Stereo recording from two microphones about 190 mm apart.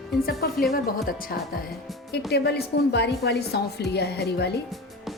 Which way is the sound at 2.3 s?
60° left (ahead or behind).